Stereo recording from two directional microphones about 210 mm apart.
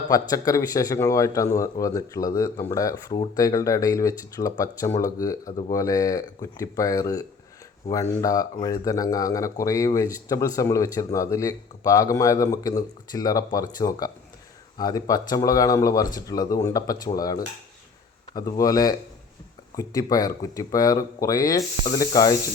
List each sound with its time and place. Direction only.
0.1 s a man's voice: 15° left (ahead or behind)